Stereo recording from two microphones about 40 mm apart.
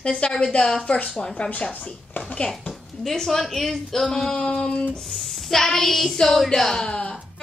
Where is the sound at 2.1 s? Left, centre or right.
Left.